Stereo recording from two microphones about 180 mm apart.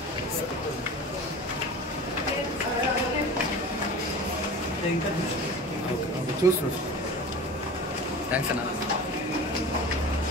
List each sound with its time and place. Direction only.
6.4 s speech: 15° right (ahead or behind)